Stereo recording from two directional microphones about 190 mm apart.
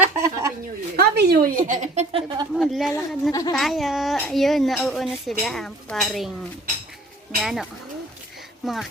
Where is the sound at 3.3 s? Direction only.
15° left (ahead or behind).